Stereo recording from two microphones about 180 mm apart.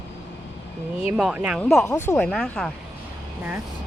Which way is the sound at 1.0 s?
5° right (ahead or behind).